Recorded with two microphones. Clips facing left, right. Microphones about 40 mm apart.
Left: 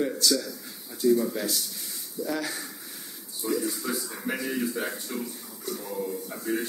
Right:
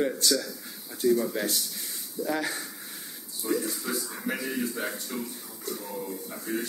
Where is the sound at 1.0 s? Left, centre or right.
Centre.